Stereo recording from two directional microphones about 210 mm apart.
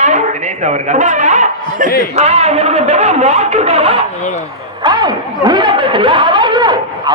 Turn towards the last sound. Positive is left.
turn(degrees=-20)  # may be behind; listen again after turning